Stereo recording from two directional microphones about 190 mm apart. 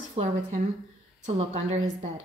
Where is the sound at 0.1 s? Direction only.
40° right (ahead or behind).